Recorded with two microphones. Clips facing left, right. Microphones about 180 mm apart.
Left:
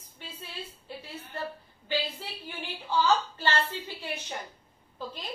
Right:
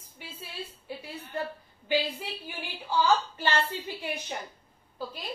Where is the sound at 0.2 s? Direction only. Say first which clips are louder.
Right 1 dB; 10° right (ahead or behind).